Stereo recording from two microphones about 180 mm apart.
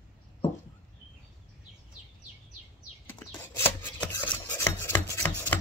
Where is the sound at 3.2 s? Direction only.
15° left (ahead or behind).